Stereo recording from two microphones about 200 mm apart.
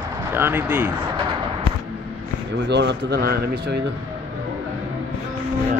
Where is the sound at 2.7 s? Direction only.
60° right (ahead or behind).